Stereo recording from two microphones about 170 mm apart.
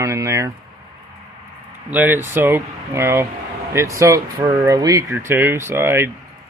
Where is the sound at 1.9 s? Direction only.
10° right (ahead or behind).